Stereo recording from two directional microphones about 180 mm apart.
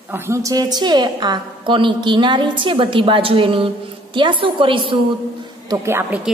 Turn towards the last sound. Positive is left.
turn(degrees=-10)  # may be behind; listen again after turning